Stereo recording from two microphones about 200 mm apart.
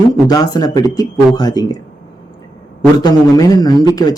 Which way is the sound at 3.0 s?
20° left (ahead or behind).